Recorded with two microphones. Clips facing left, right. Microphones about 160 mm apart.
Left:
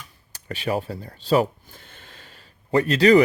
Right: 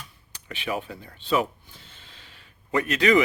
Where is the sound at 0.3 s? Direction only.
40° left (ahead or behind).